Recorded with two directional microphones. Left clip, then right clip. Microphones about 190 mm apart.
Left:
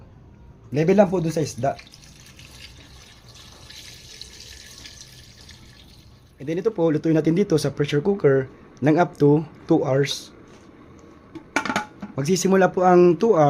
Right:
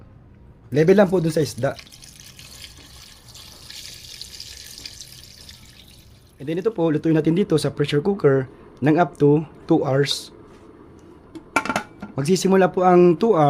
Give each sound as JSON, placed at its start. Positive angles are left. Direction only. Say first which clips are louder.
{"t": 0.7, "sound": "speech", "louder": "right 2 dB", "side_deg": -40}
{"t": 6.4, "sound": "speech", "louder": "even", "side_deg": -20}
{"t": 8.9, "sound": "speech", "louder": "right 1 dB", "side_deg": -15}
{"t": 12.1, "sound": "speech", "louder": "right 2 dB", "side_deg": -30}